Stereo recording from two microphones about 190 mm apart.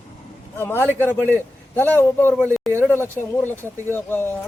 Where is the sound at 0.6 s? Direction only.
10° left (ahead or behind).